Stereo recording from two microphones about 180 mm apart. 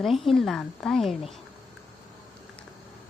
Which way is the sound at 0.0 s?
Centre (ahead or behind).